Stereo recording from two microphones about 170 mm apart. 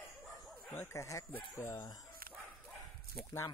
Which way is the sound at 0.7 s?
15° left (ahead or behind).